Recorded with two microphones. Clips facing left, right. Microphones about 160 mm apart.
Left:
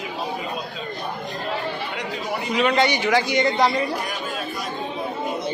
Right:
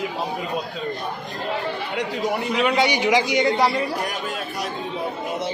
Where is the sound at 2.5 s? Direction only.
5° right (ahead or behind).